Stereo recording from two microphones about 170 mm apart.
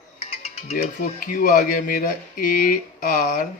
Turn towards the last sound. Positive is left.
turn(degrees=60)  # may be behind; listen again after turning